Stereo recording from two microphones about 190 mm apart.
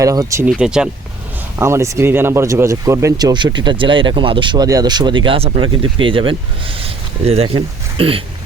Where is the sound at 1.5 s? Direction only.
15° right (ahead or behind).